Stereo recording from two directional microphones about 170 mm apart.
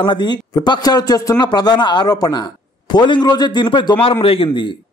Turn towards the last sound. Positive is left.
turn(degrees=30)  # may be behind; listen again after turning